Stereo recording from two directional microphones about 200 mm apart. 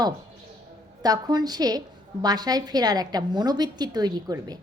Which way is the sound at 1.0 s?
20° right (ahead or behind).